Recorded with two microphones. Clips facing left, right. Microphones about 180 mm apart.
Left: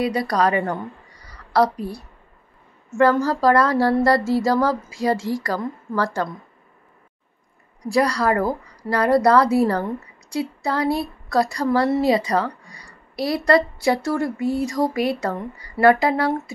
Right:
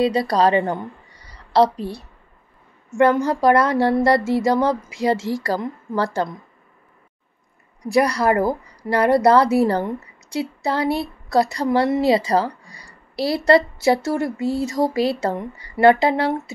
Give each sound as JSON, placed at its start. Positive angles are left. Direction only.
{"t": 0.0, "sound": "a woman's voice", "side_deg": -25}
{"t": 7.9, "sound": "a woman's voice", "side_deg": -20}